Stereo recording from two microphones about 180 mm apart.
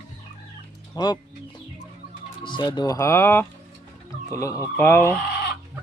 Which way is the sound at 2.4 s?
25° left (ahead or behind).